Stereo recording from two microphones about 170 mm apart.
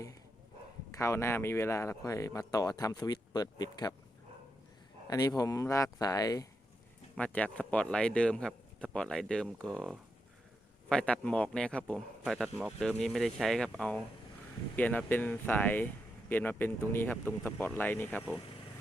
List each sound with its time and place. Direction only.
0.9 s speech: 15° left (ahead or behind)
5.0 s speech: 20° left (ahead or behind)
7.2 s speech: 10° left (ahead or behind)